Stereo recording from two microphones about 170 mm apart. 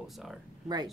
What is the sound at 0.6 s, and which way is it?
Speech, 25° right (ahead or behind).